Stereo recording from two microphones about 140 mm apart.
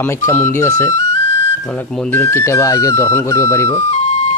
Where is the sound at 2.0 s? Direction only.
15° left (ahead or behind).